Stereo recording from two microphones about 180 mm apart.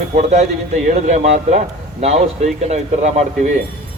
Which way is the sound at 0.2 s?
40° right (ahead or behind).